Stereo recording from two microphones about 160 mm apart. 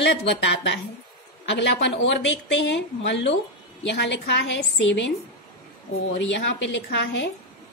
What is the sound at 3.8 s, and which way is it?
A woman's voice, 90° left.